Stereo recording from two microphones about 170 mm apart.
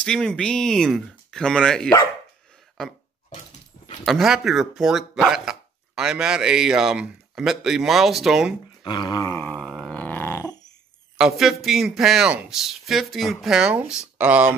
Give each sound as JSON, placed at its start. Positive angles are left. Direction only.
{"t": 0.0, "sound": "speech", "side_deg": 5}
{"t": 4.0, "sound": "speech", "side_deg": 0}
{"t": 8.8, "sound": "dog", "side_deg": 25}
{"t": 9.5, "sound": "grunt", "side_deg": 0}
{"t": 11.1, "sound": "speech", "side_deg": -5}